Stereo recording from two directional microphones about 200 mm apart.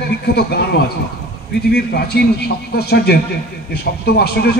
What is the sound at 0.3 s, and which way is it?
A man's voice, 55° left (ahead or behind).